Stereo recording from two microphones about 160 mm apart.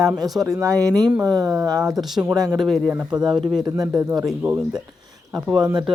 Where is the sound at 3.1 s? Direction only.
25° right (ahead or behind).